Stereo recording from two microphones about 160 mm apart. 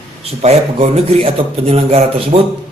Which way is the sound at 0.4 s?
40° right (ahead or behind).